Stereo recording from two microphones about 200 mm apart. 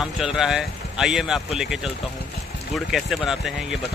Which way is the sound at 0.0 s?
Centre (ahead or behind).